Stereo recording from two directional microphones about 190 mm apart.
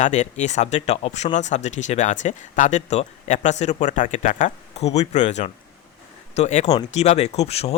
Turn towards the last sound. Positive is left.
turn(degrees=35)  # may be behind; listen again after turning